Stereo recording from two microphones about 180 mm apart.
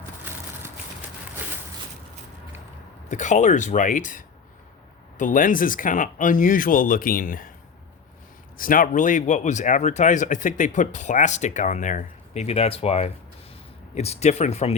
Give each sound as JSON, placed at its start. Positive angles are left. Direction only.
{"t": 3.1, "sound": "speech", "side_deg": 45}
{"t": 8.5, "sound": "speech", "side_deg": 50}